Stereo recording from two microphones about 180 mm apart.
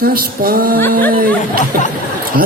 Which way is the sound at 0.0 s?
55° right (ahead or behind).